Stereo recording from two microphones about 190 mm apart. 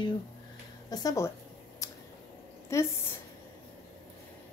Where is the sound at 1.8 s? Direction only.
15° left (ahead or behind).